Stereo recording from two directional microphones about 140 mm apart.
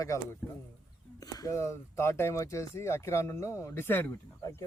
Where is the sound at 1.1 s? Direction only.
25° left (ahead or behind).